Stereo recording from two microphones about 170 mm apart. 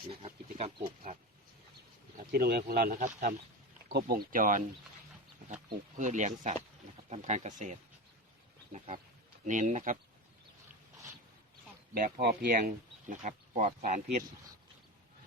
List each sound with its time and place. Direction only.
0.3 s speech: 40° right (ahead or behind)
2.1 s speech: 60° right (ahead or behind)
5.6 s speech: 45° right (ahead or behind)
9.5 s speech: 50° right (ahead or behind)
11.9 s speech: 55° right (ahead or behind)